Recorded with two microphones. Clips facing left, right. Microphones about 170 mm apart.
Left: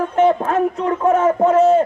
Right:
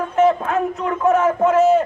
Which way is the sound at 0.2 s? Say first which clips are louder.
Left 1 dB; 30° left (ahead or behind).